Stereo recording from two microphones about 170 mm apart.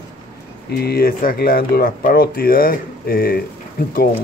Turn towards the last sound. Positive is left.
turn(degrees=60)  # may be behind; listen again after turning